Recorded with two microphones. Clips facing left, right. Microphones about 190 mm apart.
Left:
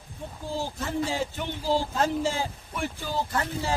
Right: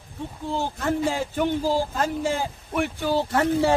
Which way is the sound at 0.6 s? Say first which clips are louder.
Right 4 dB; 55° right (ahead or behind).